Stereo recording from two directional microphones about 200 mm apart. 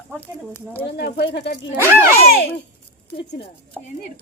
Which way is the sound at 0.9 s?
50° left (ahead or behind).